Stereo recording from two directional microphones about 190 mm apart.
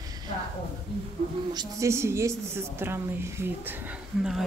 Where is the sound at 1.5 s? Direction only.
20° right (ahead or behind).